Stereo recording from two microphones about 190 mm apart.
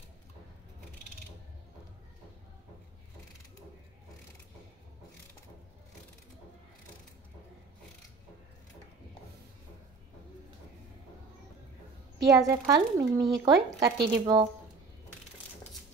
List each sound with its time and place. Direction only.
12.3 s a woman's voice: 15° right (ahead or behind)